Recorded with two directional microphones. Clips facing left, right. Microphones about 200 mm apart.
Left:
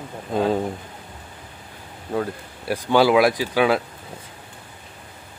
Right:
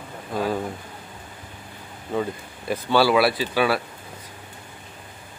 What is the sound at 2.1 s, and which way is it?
A man's voice, 10° left (ahead or behind).